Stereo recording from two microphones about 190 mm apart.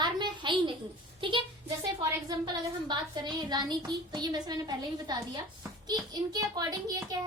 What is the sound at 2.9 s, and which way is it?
A woman's voice, 20° right (ahead or behind).